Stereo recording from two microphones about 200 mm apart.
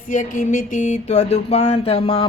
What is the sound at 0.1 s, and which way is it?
Speech, 40° left (ahead or behind).